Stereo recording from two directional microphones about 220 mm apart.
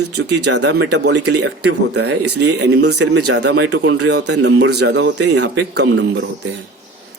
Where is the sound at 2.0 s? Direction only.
90° right.